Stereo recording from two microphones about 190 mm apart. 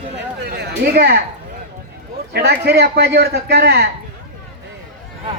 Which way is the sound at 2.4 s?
55° right (ahead or behind).